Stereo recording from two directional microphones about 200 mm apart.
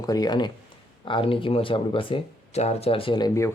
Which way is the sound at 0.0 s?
20° left (ahead or behind).